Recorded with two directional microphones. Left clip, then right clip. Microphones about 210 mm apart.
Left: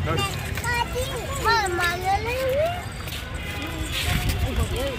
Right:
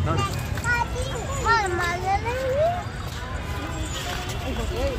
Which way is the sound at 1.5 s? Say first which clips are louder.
Even; 50° left (ahead or behind).